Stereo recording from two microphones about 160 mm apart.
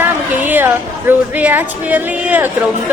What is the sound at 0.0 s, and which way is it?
A woman's voice, 10° right (ahead or behind).